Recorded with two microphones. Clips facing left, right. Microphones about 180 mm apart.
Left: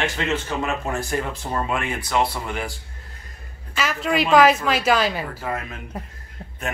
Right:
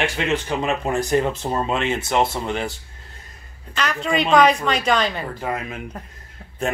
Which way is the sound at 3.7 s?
5° left (ahead or behind).